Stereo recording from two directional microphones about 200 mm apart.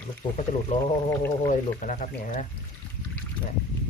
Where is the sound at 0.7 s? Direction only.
40° left (ahead or behind).